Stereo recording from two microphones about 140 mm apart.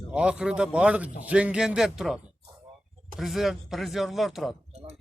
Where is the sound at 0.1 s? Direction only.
5° right (ahead or behind).